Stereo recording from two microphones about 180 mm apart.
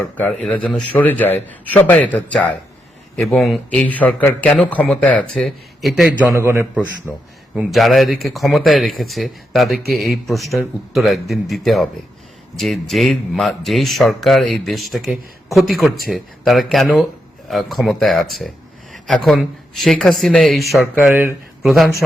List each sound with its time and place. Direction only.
0.0 s a man's voice: 10° left (ahead or behind)